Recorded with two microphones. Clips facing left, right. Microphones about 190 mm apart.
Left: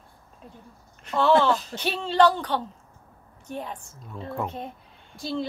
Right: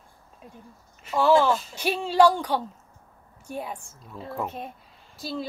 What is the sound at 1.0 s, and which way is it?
A woman's voice, 5° right (ahead or behind).